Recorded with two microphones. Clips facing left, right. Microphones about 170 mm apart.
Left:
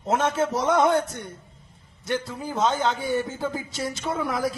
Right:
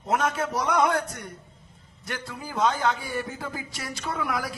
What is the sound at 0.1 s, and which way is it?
Speech, 25° left (ahead or behind).